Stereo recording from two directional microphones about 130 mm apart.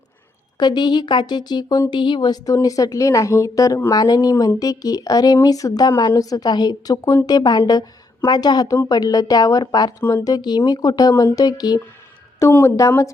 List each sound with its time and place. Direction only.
0.6 s a woman's voice: 35° left (ahead or behind)
10.0 s speech: 15° left (ahead or behind)
10.2 s a woman's voice: 30° left (ahead or behind)
12.4 s a woman's voice: 20° left (ahead or behind)